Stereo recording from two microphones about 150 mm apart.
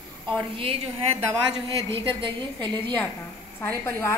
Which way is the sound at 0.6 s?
35° right (ahead or behind).